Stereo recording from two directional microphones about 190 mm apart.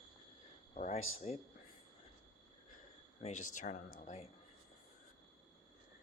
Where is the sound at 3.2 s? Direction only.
40° left (ahead or behind).